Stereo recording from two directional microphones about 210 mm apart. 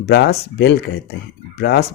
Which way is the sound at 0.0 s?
55° left (ahead or behind).